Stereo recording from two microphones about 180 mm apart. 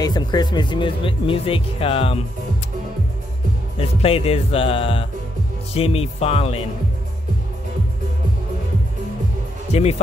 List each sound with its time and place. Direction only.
0.0 s speech: 20° left (ahead or behind)
4.0 s speech: 30° left (ahead or behind)
9.7 s speech: 35° left (ahead or behind)